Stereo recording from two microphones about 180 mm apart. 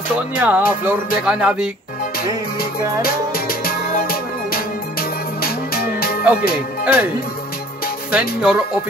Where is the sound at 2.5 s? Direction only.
55° left (ahead or behind).